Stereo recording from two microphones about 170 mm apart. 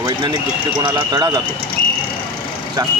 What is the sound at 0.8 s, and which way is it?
Speech, 25° right (ahead or behind).